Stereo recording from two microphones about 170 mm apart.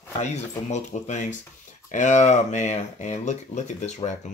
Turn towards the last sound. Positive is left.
turn(degrees=45)  # may be behind; listen again after turning